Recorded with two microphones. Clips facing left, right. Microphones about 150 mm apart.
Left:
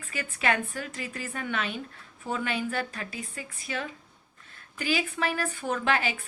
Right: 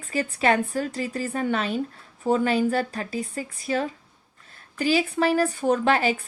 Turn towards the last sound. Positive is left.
turn(degrees=-35)  # may be behind; listen again after turning